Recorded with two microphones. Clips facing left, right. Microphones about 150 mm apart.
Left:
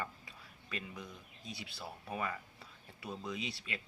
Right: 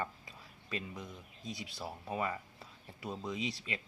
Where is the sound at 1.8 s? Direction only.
20° right (ahead or behind).